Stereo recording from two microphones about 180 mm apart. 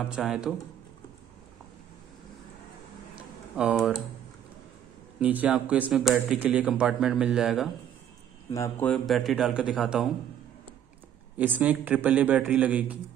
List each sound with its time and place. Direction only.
0.0 s speech: 5° right (ahead or behind)
3.2 s typing: 5° right (ahead or behind)
5.2 s speech: 10° right (ahead or behind)
8.5 s speech: 15° left (ahead or behind)
8.8 s speech: centre (ahead or behind)
11.3 s a man's voice: 10° right (ahead or behind)